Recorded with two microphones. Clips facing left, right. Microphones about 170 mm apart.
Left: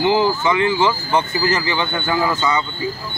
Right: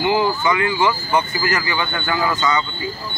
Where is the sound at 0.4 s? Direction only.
25° left (ahead or behind).